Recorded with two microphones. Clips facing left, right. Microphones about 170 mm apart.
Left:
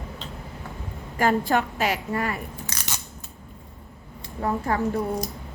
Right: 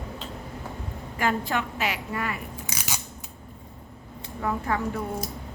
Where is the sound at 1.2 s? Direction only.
40° left (ahead or behind).